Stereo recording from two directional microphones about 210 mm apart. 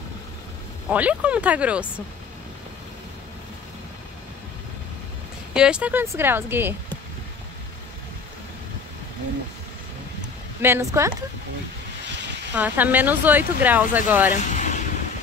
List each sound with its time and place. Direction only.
0.8 s speech: 5° right (ahead or behind)
5.5 s speech: 5° right (ahead or behind)
10.6 s speech: 15° right (ahead or behind)
12.5 s speech: 10° right (ahead or behind)
14.4 s vehicle: 35° left (ahead or behind)